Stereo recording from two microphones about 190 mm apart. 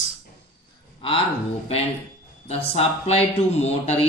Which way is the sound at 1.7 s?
35° left (ahead or behind).